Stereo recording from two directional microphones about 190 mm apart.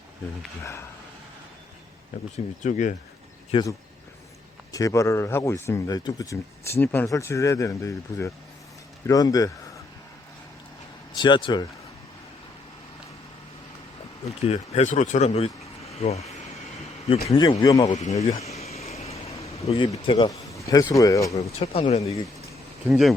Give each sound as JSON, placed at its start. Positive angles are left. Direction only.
{"t": 0.6, "sound": "speech", "side_deg": 15}
{"t": 2.6, "sound": "speech", "side_deg": 40}
{"t": 3.5, "sound": "speech", "side_deg": 20}
{"t": 11.2, "sound": "speech", "side_deg": 25}
{"t": 14.4, "sound": "speech", "side_deg": 35}
{"t": 17.2, "sound": "speech", "side_deg": 20}
{"t": 17.9, "sound": "a sound", "side_deg": 35}
{"t": 20.7, "sound": "speech", "side_deg": 20}
{"t": 21.6, "sound": "speech", "side_deg": 30}
{"t": 22.9, "sound": "speech", "side_deg": 0}